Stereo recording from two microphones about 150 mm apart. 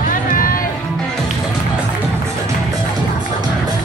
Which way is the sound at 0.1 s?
70° left (ahead or behind).